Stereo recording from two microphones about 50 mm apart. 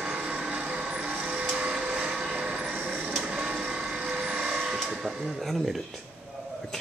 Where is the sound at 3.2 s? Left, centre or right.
Centre.